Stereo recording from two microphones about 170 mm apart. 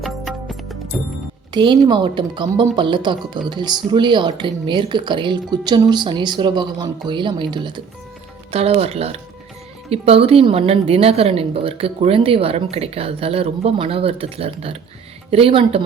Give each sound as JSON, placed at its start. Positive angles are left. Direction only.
{"t": 0.0, "sound": "music", "side_deg": 0}
{"t": 1.5, "sound": "a woman's voice", "side_deg": -25}